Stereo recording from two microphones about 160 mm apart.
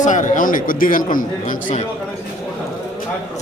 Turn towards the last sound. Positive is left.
turn(degrees=55)  # may be behind; listen again after turning